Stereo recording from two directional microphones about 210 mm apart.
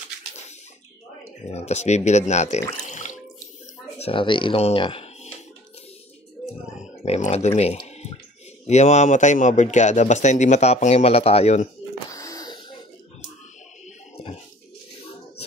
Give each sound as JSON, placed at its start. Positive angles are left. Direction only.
{"t": 1.4, "sound": "a man's voice", "side_deg": 30}
{"t": 4.0, "sound": "speech", "side_deg": 25}
{"t": 7.1, "sound": "a man's voice", "side_deg": 30}
{"t": 12.1, "sound": "a sound", "side_deg": 15}